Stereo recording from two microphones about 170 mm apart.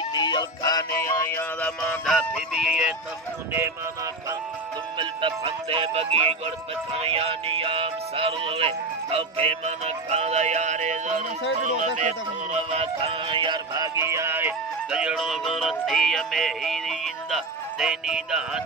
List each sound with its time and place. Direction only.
0.1 s music: 25° left (ahead or behind); by 2.9 s centre (ahead or behind)
4.9 s music: 30° right (ahead or behind)
12.5 s music: 35° right (ahead or behind); by 18.6 s 5° right (ahead or behind)